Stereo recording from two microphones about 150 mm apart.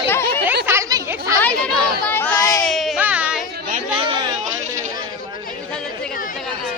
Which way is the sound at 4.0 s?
35° right (ahead or behind).